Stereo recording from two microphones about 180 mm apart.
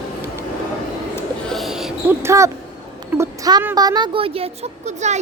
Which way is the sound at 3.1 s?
15° right (ahead or behind).